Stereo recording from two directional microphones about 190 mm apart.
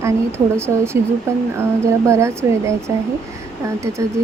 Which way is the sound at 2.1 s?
15° right (ahead or behind).